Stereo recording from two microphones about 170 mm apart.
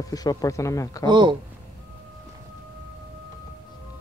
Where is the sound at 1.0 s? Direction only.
30° right (ahead or behind).